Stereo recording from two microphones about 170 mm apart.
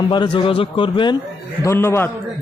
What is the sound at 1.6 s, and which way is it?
Speech, 15° left (ahead or behind).